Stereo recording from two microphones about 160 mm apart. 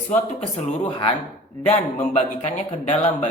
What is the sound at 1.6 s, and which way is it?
Speech, 45° left (ahead or behind).